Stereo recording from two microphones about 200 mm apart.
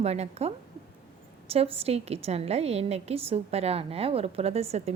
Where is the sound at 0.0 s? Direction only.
30° right (ahead or behind).